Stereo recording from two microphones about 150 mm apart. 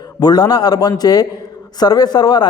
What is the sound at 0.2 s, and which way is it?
A man's voice, 25° left (ahead or behind).